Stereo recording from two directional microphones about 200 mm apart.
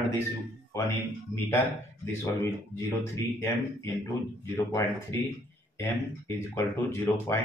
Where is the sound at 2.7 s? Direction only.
15° left (ahead or behind).